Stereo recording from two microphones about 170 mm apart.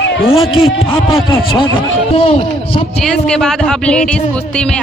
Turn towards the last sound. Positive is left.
turn(degrees=5)  # may be behind; listen again after turning